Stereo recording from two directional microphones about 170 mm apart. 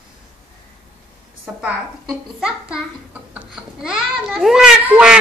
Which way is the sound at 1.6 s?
5° right (ahead or behind).